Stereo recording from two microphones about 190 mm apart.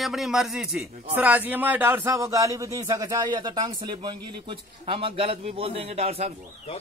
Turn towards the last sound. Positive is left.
turn(degrees=-30)  # may be behind; listen again after turning